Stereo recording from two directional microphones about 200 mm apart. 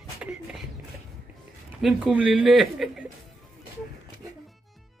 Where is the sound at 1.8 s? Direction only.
5° right (ahead or behind).